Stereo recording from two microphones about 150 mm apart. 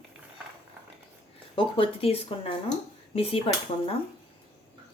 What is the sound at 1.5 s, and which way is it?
Speech, 35° left (ahead or behind).